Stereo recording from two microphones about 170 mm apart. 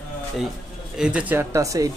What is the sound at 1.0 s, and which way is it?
Speech, 5° right (ahead or behind).